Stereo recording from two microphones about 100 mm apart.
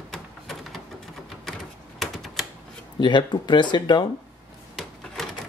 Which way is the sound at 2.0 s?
Centre (ahead or behind).